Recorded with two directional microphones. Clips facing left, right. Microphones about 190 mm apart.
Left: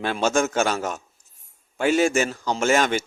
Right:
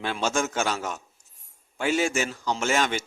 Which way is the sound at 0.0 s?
50° left (ahead or behind).